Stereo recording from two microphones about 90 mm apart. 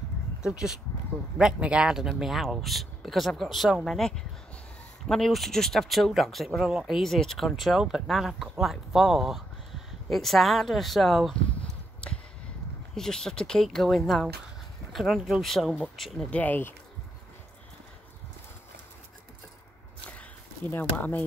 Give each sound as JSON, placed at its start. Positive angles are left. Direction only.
{"t": 0.4, "sound": "speech", "side_deg": -5}
{"t": 12.9, "sound": "speech", "side_deg": 5}
{"t": 16.3, "sound": "speech", "side_deg": 20}
{"t": 20.0, "sound": "a sound", "side_deg": 15}
{"t": 20.7, "sound": "speech", "side_deg": 20}